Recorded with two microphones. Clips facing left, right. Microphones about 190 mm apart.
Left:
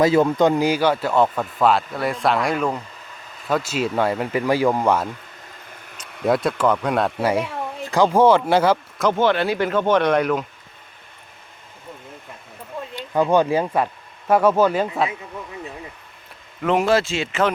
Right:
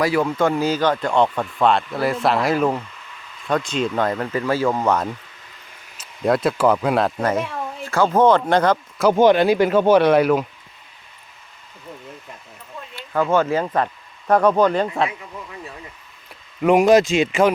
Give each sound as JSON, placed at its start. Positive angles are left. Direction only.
{"t": 0.0, "sound": "speech", "side_deg": 20}
{"t": 6.2, "sound": "speech", "side_deg": 0}
{"t": 7.2, "sound": "speech", "side_deg": 10}
{"t": 9.0, "sound": "speech", "side_deg": -10}
{"t": 13.0, "sound": "speech", "side_deg": 15}
{"t": 16.6, "sound": "speech", "side_deg": -15}